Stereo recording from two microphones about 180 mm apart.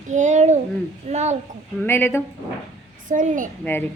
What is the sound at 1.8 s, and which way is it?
Speech, 10° left (ahead or behind).